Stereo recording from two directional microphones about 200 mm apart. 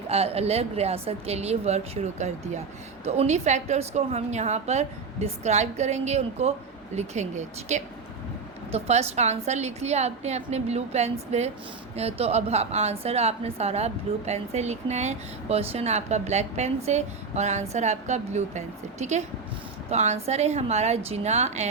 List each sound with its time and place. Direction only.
0.1 s a woman's voice: 30° right (ahead or behind)